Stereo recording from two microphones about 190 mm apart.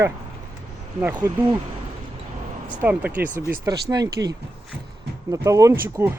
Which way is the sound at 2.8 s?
10° right (ahead or behind).